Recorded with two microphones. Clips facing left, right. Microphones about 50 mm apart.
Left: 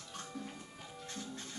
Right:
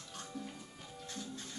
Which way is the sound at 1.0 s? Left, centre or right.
Left.